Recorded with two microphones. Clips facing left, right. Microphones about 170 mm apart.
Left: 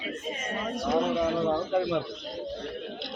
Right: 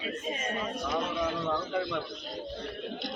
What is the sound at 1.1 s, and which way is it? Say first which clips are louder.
Speech: left 5 dB; 30° left (ahead or behind).